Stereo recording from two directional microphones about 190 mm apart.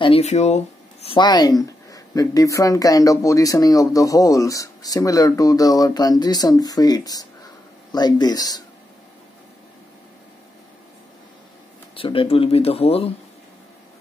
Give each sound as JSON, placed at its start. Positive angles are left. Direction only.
{"t": 0.0, "sound": "speech", "side_deg": 30}
{"t": 1.0, "sound": "speech", "side_deg": 25}
{"t": 11.9, "sound": "speech", "side_deg": 30}